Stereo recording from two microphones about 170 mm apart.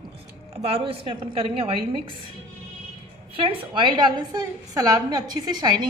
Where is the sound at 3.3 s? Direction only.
30° right (ahead or behind).